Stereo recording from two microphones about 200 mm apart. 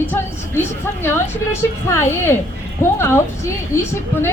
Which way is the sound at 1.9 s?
10° left (ahead or behind).